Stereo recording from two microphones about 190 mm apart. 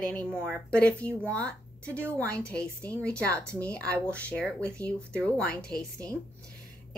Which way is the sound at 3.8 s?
15° right (ahead or behind).